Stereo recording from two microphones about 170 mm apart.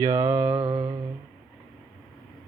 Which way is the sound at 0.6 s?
35° right (ahead or behind).